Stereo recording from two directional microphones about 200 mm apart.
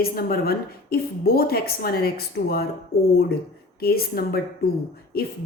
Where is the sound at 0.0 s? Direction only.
50° left (ahead or behind).